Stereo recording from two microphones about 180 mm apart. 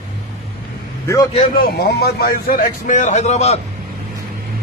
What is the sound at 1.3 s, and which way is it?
A man's voice, 50° left (ahead or behind).